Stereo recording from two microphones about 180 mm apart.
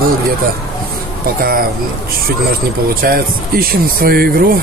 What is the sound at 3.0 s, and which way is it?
Speech, 55° right (ahead or behind).